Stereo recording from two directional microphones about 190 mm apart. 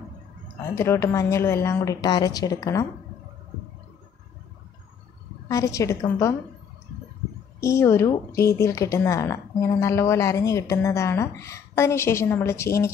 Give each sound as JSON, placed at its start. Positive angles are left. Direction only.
{"t": 0.6, "sound": "speech", "side_deg": 15}
{"t": 5.5, "sound": "speech", "side_deg": 15}
{"t": 7.6, "sound": "speech", "side_deg": 15}